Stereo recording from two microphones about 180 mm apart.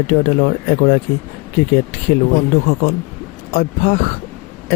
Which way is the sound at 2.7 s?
45° left (ahead or behind).